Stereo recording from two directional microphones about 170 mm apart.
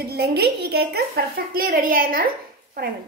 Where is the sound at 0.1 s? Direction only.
70° right (ahead or behind).